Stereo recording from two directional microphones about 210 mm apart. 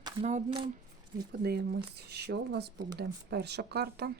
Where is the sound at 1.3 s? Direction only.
50° right (ahead or behind).